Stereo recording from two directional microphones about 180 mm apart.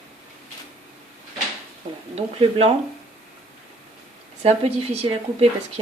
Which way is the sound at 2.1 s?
30° right (ahead or behind).